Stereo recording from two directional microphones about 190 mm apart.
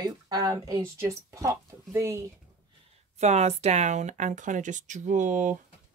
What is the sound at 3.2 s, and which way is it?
Speech, 35° right (ahead or behind).